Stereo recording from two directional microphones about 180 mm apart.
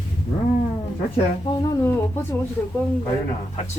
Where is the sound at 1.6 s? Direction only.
15° left (ahead or behind).